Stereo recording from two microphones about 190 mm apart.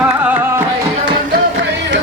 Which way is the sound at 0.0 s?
5° right (ahead or behind).